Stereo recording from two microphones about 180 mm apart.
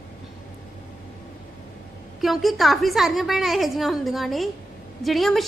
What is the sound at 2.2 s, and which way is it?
A woman's voice, centre (ahead or behind).